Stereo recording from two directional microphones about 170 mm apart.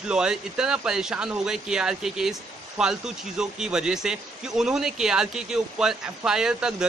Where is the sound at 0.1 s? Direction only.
5° right (ahead or behind).